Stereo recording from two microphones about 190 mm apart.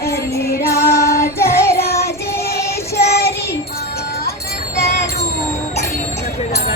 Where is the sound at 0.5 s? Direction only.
55° left (ahead or behind).